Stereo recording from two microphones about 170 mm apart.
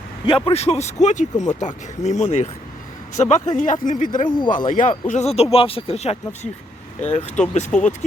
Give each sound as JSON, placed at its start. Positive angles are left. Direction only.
{"t": 0.3, "sound": "speech", "side_deg": 30}